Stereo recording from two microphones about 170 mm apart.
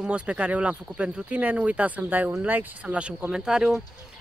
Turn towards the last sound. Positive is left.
turn(degrees=-5)  # may be behind; listen again after turning